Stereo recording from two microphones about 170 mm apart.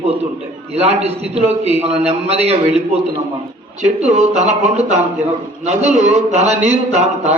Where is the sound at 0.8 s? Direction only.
40° right (ahead or behind).